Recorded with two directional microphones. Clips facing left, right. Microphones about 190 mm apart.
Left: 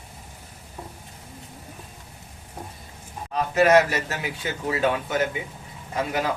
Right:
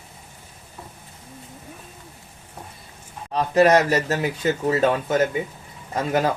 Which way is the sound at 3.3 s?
35° right (ahead or behind).